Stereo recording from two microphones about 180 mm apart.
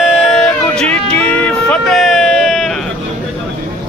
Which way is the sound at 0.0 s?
Centre (ahead or behind).